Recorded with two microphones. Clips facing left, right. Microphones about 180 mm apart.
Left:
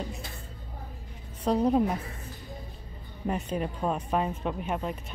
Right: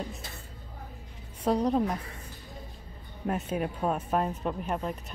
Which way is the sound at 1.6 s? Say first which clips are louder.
Left 5 dB; 5° left (ahead or behind).